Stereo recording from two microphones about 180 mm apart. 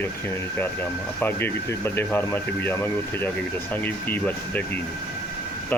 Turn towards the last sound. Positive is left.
turn(degrees=10)  # may be behind; listen again after turning